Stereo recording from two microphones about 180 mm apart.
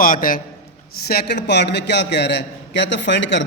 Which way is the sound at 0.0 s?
50° left (ahead or behind).